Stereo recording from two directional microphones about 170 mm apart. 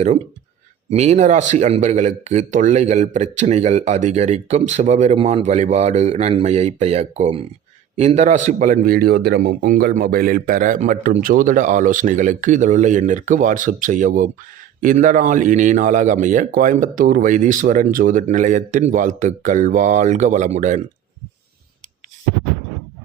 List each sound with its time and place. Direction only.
0.9 s a man's voice: 40° right (ahead or behind)